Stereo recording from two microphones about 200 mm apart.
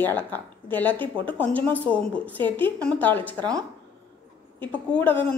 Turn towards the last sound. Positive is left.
turn(degrees=10)  # may be behind; listen again after turning